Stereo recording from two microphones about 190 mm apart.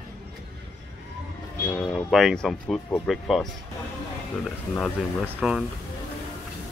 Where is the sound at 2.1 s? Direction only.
Centre (ahead or behind).